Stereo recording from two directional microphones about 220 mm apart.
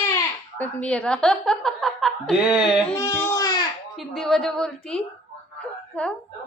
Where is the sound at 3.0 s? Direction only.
10° left (ahead or behind).